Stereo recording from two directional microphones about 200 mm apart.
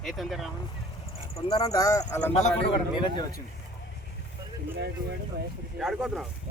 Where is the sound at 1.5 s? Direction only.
20° left (ahead or behind).